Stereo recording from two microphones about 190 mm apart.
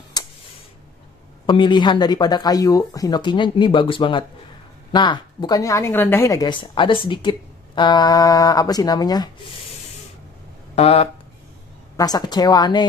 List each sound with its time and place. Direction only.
0.2 s a sound: 20° left (ahead or behind)
1.4 s a woman's voice: 25° left (ahead or behind)
10.8 s speech: 30° left (ahead or behind)
12.0 s a woman's voice: 20° left (ahead or behind)